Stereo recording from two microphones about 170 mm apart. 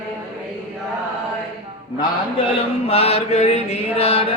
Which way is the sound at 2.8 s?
35° left (ahead or behind).